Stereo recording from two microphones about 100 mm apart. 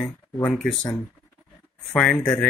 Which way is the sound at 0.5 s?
Centre (ahead or behind).